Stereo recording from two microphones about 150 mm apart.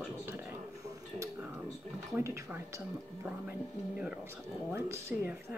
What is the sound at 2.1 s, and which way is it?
Speech, 15° right (ahead or behind).